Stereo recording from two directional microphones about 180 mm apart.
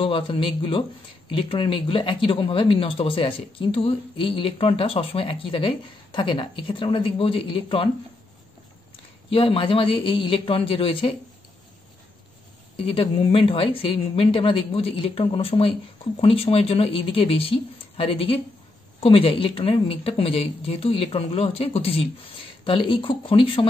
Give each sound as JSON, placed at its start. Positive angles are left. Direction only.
{"t": 0.0, "sound": "speech", "side_deg": 30}
{"t": 9.3, "sound": "speech", "side_deg": 30}
{"t": 12.7, "sound": "speech", "side_deg": 30}